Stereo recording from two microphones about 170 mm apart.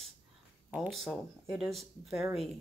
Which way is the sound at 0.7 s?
5° right (ahead or behind).